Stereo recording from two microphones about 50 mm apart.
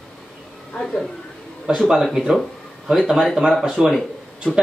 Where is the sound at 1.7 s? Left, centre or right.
Centre.